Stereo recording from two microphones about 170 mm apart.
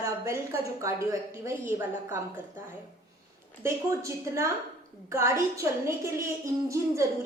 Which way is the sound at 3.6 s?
15° right (ahead or behind).